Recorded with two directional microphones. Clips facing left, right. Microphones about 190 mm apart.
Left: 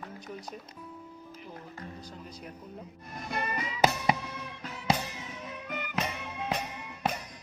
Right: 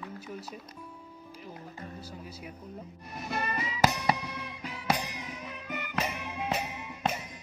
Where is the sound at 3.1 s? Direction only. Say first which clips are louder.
Right 1 dB; 5° right (ahead or behind).